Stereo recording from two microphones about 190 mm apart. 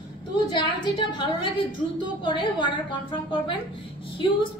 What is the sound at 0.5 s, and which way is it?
A woman's voice, 20° left (ahead or behind).